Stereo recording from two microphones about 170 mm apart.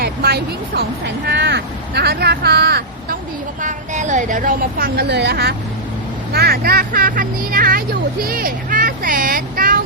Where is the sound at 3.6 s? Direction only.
50° right (ahead or behind).